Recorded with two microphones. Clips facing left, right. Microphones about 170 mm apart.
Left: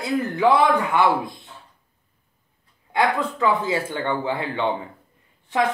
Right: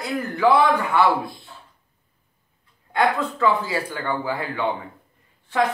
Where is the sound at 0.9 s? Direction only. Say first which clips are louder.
Even; 20° left (ahead or behind).